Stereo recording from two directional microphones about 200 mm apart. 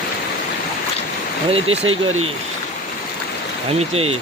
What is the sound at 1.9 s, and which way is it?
Speech, 90° right.